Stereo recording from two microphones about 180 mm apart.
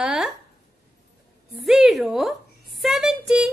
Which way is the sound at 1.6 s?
Centre (ahead or behind).